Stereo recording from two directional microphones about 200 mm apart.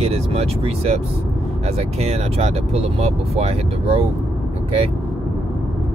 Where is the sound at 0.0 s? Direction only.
30° right (ahead or behind).